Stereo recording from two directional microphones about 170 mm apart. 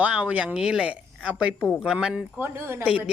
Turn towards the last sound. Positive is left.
turn(degrees=-5)  # may be behind; listen again after turning